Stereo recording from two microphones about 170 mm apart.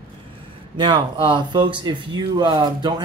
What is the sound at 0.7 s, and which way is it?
Speech, 30° right (ahead or behind).